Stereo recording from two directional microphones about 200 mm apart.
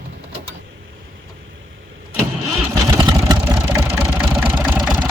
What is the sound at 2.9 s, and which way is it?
Vehicle, 20° right (ahead or behind).